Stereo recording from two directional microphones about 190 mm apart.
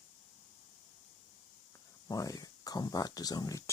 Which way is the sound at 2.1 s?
20° left (ahead or behind).